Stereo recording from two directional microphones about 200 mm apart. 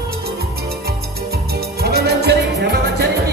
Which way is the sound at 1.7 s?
55° right (ahead or behind).